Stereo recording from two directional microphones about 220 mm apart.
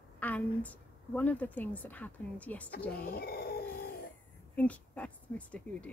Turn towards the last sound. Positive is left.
turn(degrees=5)  # may be behind; listen again after turning